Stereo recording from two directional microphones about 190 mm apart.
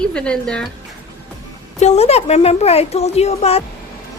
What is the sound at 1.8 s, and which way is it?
A woman's voice, 35° left (ahead or behind).